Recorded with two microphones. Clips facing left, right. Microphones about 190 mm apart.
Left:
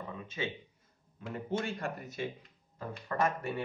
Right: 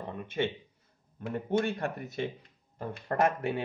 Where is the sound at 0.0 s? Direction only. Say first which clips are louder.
Right 6 dB; 60° right (ahead or behind).